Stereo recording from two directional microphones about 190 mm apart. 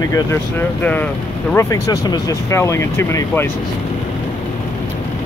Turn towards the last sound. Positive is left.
turn(degrees=15)  # may be behind; listen again after turning